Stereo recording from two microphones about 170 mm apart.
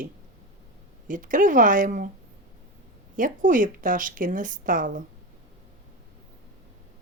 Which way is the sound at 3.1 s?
50° right (ahead or behind).